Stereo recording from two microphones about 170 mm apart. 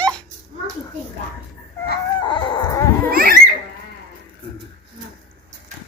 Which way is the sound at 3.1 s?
60° right (ahead or behind).